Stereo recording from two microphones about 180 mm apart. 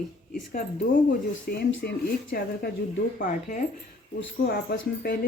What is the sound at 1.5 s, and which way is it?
Speech, 65° left (ahead or behind).